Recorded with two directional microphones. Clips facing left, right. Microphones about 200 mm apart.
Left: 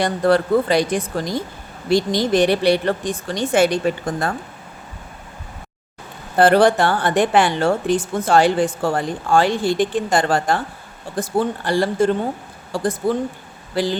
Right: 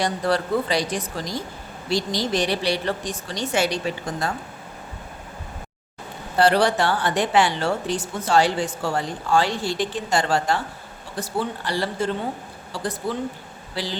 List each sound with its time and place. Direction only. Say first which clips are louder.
0.0 s speech: left 6 dB; 55° left (ahead or behind)
6.3 s speech: left 5 dB; 50° left (ahead or behind)